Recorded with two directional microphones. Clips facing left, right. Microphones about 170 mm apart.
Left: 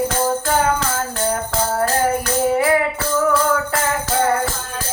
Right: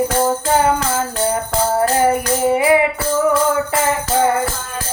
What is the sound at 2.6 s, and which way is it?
Music, 15° right (ahead or behind).